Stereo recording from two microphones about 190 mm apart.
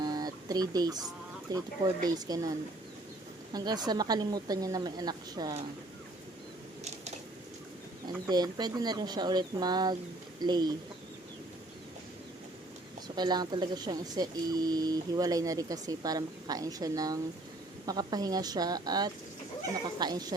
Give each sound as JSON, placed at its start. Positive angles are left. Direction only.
{"t": 0.0, "sound": "a sound", "side_deg": -20}
{"t": 1.5, "sound": "speech", "side_deg": -20}
{"t": 8.0, "sound": "speech", "side_deg": -20}
{"t": 13.1, "sound": "speech", "side_deg": -20}